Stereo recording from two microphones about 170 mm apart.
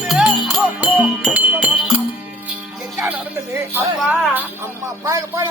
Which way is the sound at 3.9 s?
5° right (ahead or behind).